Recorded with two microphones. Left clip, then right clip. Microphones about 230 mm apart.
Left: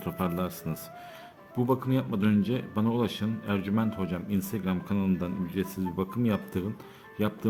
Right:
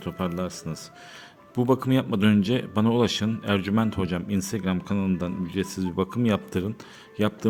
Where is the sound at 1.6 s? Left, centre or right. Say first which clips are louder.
Right 5 dB; right.